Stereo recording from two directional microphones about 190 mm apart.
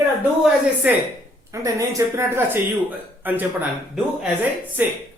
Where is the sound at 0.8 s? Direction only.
5° right (ahead or behind).